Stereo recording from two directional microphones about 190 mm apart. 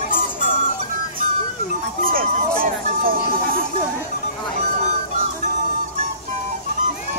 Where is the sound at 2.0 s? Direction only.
50° right (ahead or behind).